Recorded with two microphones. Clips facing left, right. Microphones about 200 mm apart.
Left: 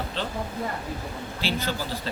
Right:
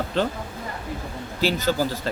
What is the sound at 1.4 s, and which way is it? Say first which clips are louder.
Speech: right 7 dB; 45° right (ahead or behind).